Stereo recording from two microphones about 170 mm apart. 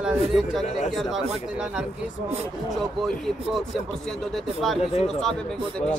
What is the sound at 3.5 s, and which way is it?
Speech, centre (ahead or behind).